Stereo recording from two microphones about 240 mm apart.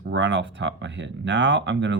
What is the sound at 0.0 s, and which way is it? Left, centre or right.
Speech, right.